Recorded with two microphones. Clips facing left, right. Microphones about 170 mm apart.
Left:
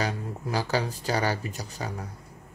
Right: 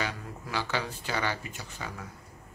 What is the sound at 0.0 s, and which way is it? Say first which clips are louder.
Speech: left 5 dB; 40° left (ahead or behind).